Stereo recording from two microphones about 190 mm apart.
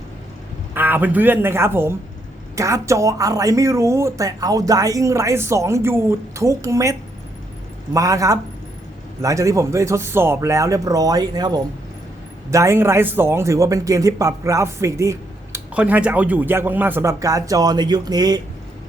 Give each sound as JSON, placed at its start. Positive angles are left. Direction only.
{"t": 0.7, "sound": "a man's voice", "side_deg": -10}
{"t": 7.9, "sound": "a man's voice", "side_deg": -15}